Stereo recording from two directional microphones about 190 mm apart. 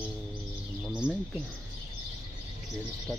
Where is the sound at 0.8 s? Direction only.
5° right (ahead or behind).